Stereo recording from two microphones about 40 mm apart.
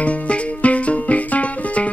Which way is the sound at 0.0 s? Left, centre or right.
Left.